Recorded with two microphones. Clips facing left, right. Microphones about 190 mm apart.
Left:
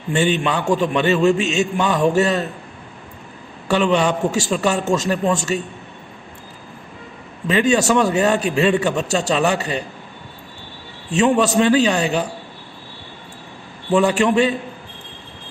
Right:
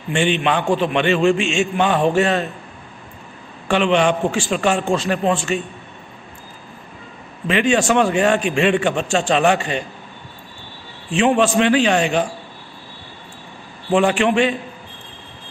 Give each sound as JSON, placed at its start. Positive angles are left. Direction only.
{"t": 0.1, "sound": "a man's voice", "side_deg": 40}
{"t": 3.6, "sound": "a man's voice", "side_deg": 40}
{"t": 7.4, "sound": "a man's voice", "side_deg": 40}
{"t": 11.1, "sound": "a man's voice", "side_deg": 40}
{"t": 14.1, "sound": "a man's voice", "side_deg": 40}